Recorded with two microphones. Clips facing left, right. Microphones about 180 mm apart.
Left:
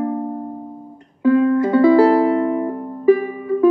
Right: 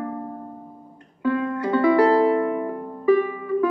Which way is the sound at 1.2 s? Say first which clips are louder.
Left 9 dB; 35° left (ahead or behind).